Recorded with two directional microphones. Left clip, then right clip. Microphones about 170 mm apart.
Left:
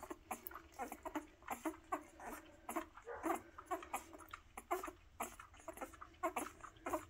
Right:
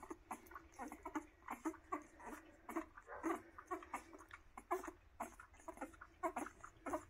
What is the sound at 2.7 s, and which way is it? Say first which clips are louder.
Dog: left 2 dB; 5° left (ahead or behind).